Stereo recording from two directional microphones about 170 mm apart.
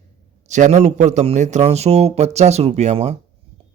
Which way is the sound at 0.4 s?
45° right (ahead or behind).